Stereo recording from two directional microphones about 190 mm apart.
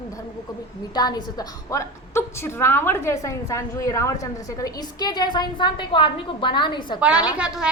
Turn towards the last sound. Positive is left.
turn(degrees=-5)  # may be behind; listen again after turning